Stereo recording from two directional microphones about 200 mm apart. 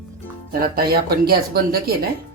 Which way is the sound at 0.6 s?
50° right (ahead or behind).